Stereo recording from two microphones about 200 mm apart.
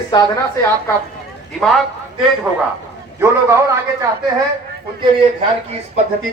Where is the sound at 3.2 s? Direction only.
10° right (ahead or behind).